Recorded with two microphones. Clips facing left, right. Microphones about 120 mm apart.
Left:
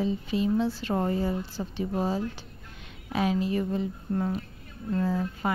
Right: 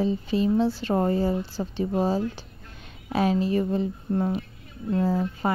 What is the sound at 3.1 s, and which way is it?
Speech, 40° right (ahead or behind).